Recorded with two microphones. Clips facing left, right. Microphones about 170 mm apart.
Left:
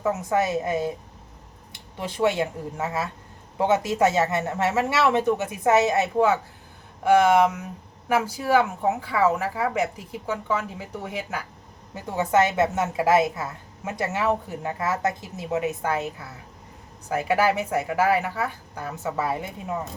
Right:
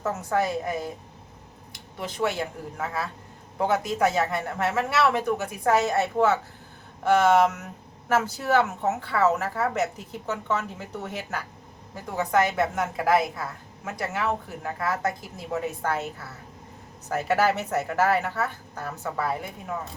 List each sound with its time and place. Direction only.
0.2 s speech: 20° left (ahead or behind)
2.2 s a woman's voice: 25° left (ahead or behind)
12.0 s speech: 25° left (ahead or behind)
17.1 s a woman's voice: 10° left (ahead or behind)